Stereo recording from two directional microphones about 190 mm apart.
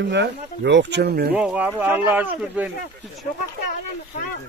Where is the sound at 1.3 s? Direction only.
5° right (ahead or behind).